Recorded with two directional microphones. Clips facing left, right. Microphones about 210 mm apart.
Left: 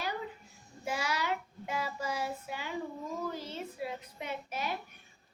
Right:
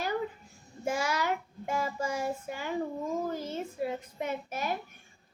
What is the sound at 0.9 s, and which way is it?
Child singing, 45° right (ahead or behind).